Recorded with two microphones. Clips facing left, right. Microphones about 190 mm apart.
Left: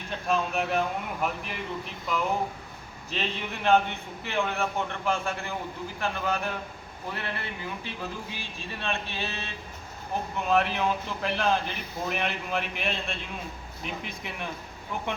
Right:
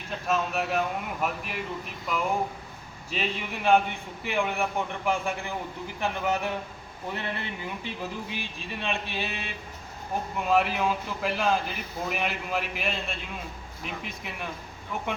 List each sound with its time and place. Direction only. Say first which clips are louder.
0.1 s a man's voice: even; centre (ahead or behind)